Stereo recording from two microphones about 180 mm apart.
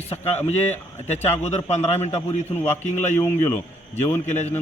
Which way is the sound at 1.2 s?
35° left (ahead or behind).